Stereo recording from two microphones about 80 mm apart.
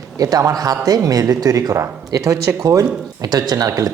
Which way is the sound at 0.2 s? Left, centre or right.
Right.